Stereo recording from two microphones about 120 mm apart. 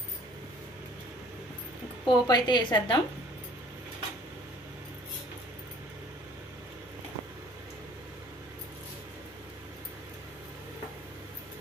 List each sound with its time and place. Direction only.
2.0 s a woman's voice: 35° left (ahead or behind)